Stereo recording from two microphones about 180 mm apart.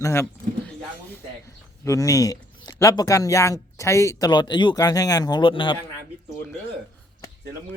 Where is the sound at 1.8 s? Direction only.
15° left (ahead or behind).